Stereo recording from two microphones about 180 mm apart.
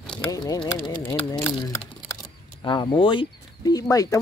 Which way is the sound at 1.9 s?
20° left (ahead or behind).